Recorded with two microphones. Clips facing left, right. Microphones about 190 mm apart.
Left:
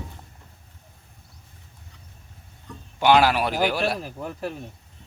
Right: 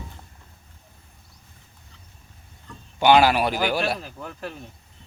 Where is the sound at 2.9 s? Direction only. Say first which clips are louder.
Right 1 dB; centre (ahead or behind).